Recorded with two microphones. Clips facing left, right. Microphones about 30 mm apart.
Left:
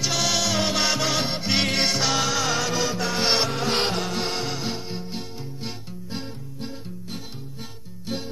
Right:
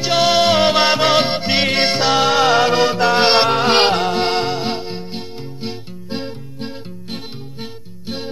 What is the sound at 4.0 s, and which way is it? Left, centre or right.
Music, right.